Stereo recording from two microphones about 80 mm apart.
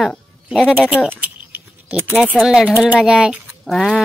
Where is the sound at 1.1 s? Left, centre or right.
Right.